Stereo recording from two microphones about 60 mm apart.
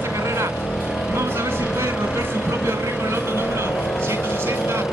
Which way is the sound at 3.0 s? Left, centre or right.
Right.